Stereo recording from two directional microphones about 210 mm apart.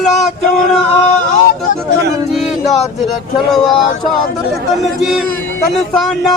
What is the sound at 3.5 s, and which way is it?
A man's voice, centre (ahead or behind).